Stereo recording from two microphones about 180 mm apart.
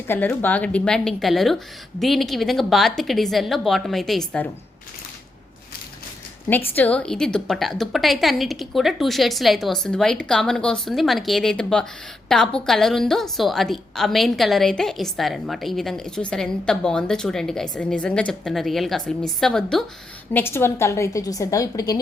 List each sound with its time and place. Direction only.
0.1 s a woman's voice: 10° left (ahead or behind)
6.7 s a woman's voice: 10° left (ahead or behind)